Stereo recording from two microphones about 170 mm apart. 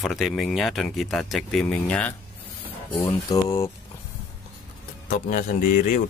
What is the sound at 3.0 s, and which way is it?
Speech, 20° left (ahead or behind).